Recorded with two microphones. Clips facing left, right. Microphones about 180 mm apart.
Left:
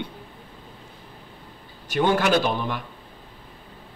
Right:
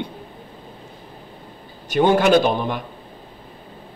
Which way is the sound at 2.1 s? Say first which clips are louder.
Right 6 dB; 20° right (ahead or behind).